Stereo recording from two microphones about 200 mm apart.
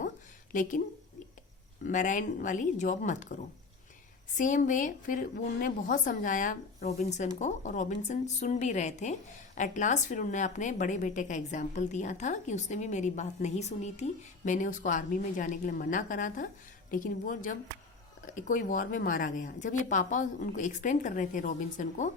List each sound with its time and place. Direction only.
0.5 s speech: 40° left (ahead or behind)
1.9 s speech: 40° left (ahead or behind)
4.4 s speech: 40° left (ahead or behind)